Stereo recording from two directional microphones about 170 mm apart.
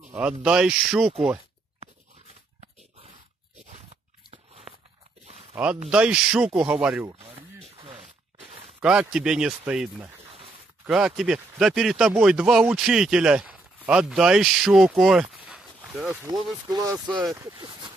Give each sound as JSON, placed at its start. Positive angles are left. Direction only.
{"t": 0.1, "sound": "speech", "side_deg": -5}
{"t": 4.3, "sound": "biting", "side_deg": -35}
{"t": 5.9, "sound": "speech", "side_deg": -5}
{"t": 7.2, "sound": "a sound", "side_deg": -35}
{"t": 8.8, "sound": "speech", "side_deg": -5}
{"t": 16.6, "sound": "speech", "side_deg": -20}